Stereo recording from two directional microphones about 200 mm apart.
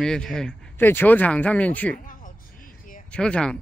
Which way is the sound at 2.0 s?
45° left (ahead or behind).